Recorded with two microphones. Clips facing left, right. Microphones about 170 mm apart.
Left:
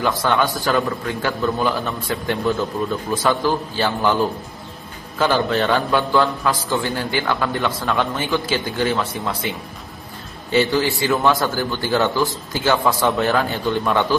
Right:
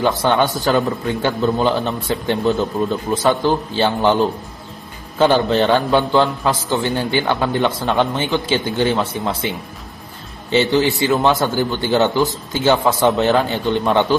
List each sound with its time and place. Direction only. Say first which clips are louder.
0.0 s a man's voice: right 3 dB; 25° right (ahead or behind)
10.5 s a man's voice: right 2 dB; 20° right (ahead or behind)